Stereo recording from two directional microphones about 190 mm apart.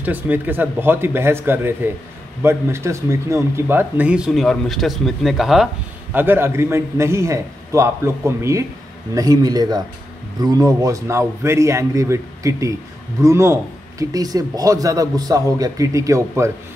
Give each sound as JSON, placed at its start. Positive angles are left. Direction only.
{"t": 0.0, "sound": "speech", "side_deg": -10}